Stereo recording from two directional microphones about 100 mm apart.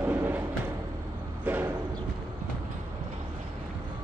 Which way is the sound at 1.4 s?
15° right (ahead or behind).